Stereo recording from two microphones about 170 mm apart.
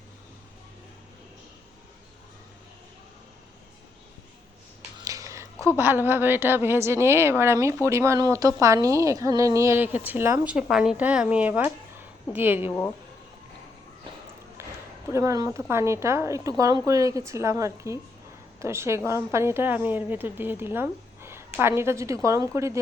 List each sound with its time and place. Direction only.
4.9 s a woman's voice: 20° right (ahead or behind)
14.6 s a sound: 15° right (ahead or behind)
15.1 s a woman's voice: 20° right (ahead or behind)